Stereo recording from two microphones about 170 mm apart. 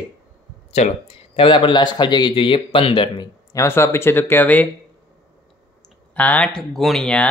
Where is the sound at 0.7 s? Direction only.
40° left (ahead or behind).